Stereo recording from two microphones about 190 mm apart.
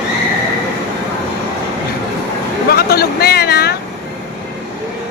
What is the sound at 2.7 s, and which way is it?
Vehicle, 55° left (ahead or behind).